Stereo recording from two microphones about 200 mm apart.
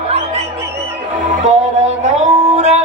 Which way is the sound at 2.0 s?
35° right (ahead or behind).